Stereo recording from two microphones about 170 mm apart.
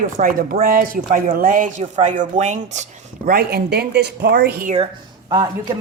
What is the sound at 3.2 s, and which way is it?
Speech, 65° right (ahead or behind).